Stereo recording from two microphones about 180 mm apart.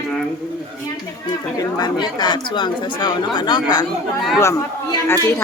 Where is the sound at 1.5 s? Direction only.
20° left (ahead or behind).